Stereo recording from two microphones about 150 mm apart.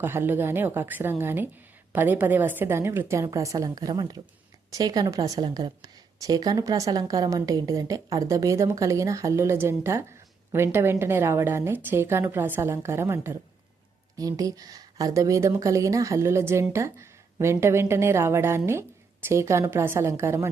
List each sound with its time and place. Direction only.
0.0 s a woman's voice: 15° right (ahead or behind)